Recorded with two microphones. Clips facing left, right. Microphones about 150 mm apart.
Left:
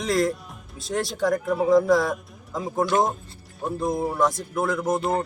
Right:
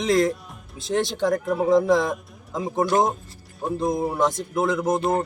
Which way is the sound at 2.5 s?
20° right (ahead or behind).